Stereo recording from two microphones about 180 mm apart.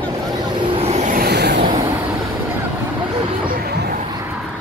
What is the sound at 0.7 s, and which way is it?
Vehicle, 35° right (ahead or behind).